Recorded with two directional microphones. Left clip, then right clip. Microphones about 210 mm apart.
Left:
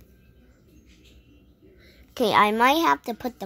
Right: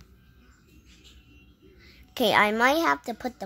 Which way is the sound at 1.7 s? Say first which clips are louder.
Left 2 dB; 5° right (ahead or behind).